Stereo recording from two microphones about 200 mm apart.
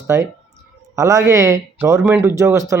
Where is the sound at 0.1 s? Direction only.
10° right (ahead or behind).